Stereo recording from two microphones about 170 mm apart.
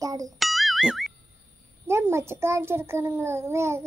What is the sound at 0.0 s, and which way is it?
Music, 20° right (ahead or behind).